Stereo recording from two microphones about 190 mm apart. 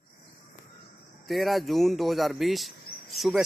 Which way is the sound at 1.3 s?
Centre (ahead or behind).